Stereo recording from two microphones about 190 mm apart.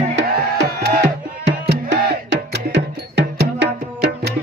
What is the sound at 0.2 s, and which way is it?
Music, 60° right (ahead or behind).